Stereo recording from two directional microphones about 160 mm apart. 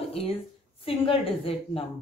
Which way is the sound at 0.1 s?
35° left (ahead or behind).